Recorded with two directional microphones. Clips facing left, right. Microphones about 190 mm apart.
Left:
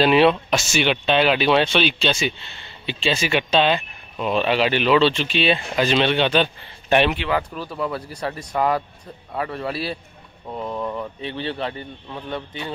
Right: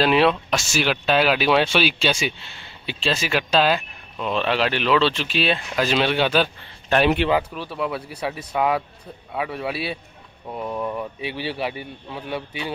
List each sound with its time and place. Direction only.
0.0 s speech: centre (ahead or behind)
7.5 s speech: centre (ahead or behind)